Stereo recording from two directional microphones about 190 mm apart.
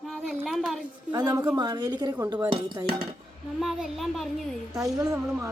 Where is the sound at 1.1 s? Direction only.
20° right (ahead or behind).